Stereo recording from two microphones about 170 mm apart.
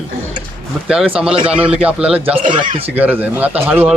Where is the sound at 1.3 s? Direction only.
35° right (ahead or behind).